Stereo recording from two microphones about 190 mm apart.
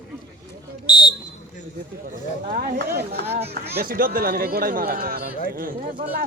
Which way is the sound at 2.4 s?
55° right (ahead or behind).